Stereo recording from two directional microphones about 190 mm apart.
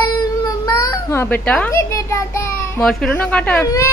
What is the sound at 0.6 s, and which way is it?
Speech, 20° left (ahead or behind).